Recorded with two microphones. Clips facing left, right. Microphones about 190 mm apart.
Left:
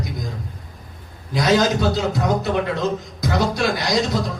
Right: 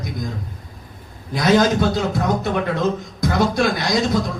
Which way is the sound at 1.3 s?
50° right (ahead or behind).